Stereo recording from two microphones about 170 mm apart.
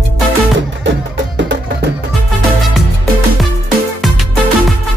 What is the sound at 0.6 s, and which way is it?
Music, 90° right.